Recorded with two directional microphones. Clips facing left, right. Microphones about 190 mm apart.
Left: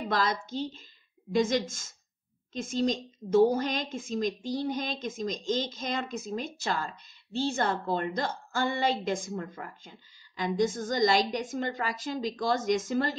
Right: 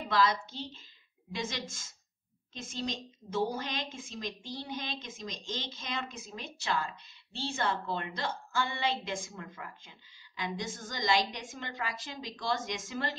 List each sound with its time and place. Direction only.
0.1 s a woman's voice: 45° left (ahead or behind)